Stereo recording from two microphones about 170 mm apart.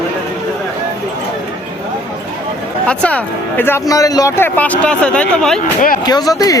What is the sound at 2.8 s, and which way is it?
Speech, 5° left (ahead or behind).